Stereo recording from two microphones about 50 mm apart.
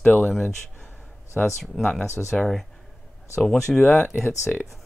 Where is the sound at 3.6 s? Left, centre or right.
Centre.